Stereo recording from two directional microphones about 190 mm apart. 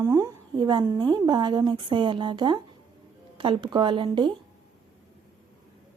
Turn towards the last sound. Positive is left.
turn(degrees=-25)  # may be behind; listen again after turning